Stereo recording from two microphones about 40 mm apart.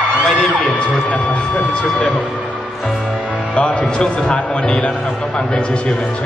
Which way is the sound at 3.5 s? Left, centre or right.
Left.